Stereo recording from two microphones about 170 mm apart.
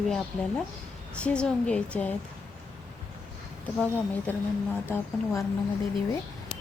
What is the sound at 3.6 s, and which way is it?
Speech, 10° left (ahead or behind).